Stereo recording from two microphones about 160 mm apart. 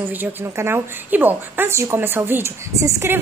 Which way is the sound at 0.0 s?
15° right (ahead or behind).